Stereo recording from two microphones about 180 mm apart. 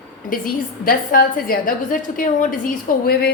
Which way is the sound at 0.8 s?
50° left (ahead or behind).